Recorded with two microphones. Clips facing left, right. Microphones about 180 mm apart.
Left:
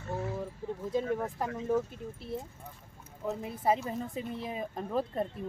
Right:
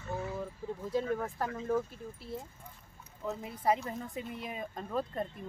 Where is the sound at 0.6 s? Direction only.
25° left (ahead or behind).